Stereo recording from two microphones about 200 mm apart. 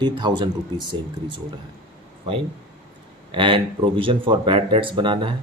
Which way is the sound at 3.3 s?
25° right (ahead or behind).